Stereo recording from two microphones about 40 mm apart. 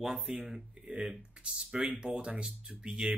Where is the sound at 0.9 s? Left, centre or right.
Right.